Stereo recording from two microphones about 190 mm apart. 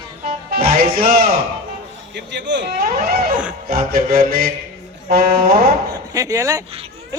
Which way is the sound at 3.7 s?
50° right (ahead or behind).